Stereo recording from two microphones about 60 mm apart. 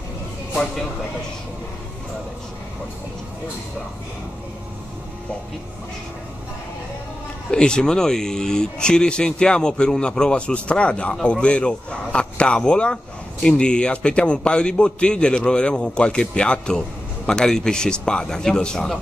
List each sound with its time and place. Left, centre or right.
7.5 s a man's voice: centre